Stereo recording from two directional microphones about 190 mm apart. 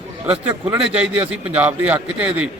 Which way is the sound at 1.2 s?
5° right (ahead or behind).